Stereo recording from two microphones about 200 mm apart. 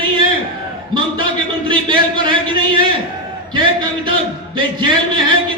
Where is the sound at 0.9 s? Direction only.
25° right (ahead or behind).